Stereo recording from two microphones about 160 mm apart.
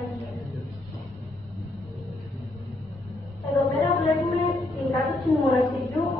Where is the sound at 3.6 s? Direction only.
20° left (ahead or behind).